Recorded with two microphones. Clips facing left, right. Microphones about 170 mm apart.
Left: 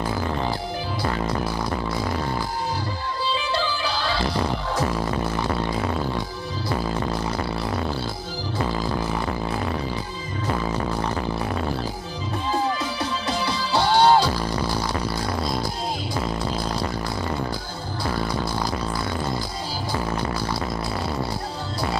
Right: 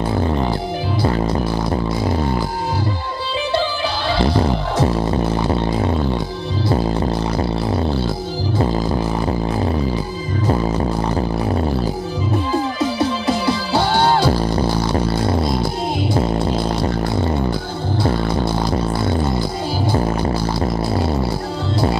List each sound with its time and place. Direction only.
1.0 s music: 30° right (ahead or behind)
4.1 s music: 30° right (ahead or behind)
6.7 s music: 30° right (ahead or behind)
13.7 s music: 30° right (ahead or behind)